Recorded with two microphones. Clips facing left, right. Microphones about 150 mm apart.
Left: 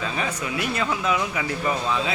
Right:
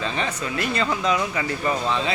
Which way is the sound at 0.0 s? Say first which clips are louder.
Right 1 dB; 5° left (ahead or behind).